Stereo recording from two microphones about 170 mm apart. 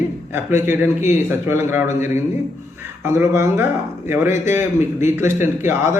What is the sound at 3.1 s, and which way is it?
A man's voice, 15° right (ahead or behind).